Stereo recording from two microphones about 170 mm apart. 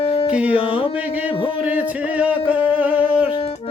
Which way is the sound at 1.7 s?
10° right (ahead or behind).